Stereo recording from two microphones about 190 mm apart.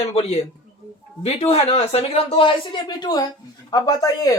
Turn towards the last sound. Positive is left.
turn(degrees=15)  # may be behind; listen again after turning